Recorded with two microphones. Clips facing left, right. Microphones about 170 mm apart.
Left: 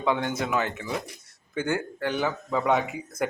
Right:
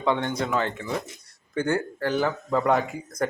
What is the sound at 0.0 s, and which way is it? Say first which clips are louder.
Speech: right 1 dB; 5° left (ahead or behind).